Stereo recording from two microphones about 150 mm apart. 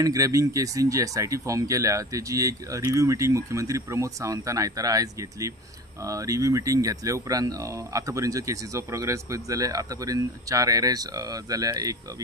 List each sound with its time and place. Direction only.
0.0 s speech: 20° right (ahead or behind)